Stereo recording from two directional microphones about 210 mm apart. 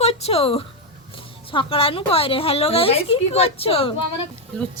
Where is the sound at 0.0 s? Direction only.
30° left (ahead or behind).